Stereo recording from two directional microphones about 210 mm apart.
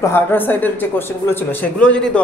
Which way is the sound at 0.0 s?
10° left (ahead or behind).